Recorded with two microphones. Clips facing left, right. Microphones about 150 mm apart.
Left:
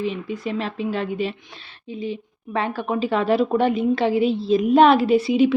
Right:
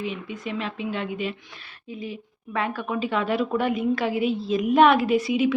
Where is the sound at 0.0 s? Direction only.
35° left (ahead or behind).